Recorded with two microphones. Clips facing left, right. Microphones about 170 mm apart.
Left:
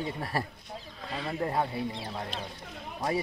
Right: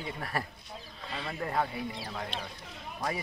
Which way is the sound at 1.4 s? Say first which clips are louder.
Left 2 dB; 20° left (ahead or behind).